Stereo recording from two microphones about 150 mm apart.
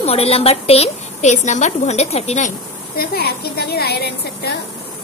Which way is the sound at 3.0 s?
90° left.